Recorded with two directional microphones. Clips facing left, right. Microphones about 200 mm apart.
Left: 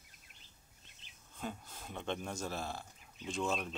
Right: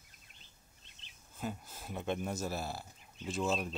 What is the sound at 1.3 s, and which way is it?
Speech, 5° right (ahead or behind).